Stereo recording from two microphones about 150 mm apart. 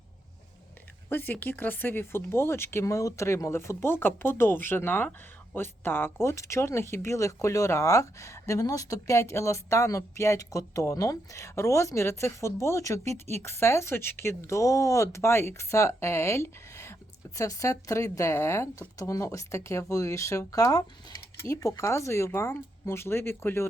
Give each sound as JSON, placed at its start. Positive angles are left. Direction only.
{"t": 1.1, "sound": "speech", "side_deg": 15}